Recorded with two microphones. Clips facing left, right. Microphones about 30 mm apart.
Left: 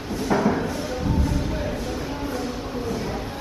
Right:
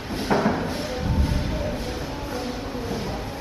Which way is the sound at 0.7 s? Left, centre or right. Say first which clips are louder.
Left 2 dB; right.